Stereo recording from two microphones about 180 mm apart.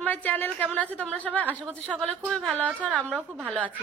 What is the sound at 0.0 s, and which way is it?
A woman's voice, 10° left (ahead or behind).